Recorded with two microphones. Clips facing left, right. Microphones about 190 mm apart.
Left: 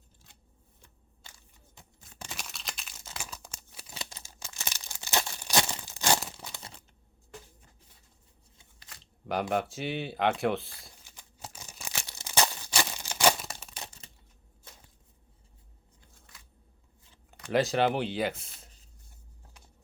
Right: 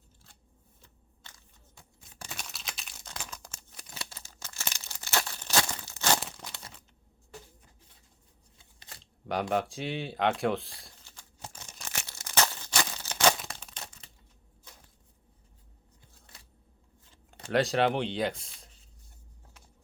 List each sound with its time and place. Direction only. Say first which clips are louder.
1.2 s a sound: even; 10° left (ahead or behind)
2.3 s crumpling: even; centre (ahead or behind)
6.2 s tearing: left 1 dB; centre (ahead or behind)
9.2 s speech: even; centre (ahead or behind)
11.0 s tearing: even; 15° left (ahead or behind)
13.4 s crumpling: left 1 dB; centre (ahead or behind)
16.2 s a sound: right 1 dB; 30° right (ahead or behind)
17.5 s speech: even; centre (ahead or behind)